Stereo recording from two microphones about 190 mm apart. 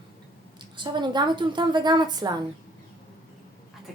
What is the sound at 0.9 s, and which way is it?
A woman's voice, 25° right (ahead or behind).